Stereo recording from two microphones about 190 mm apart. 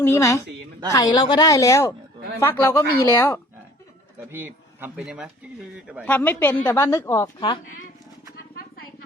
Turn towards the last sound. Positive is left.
turn(degrees=15)  # may be behind; listen again after turning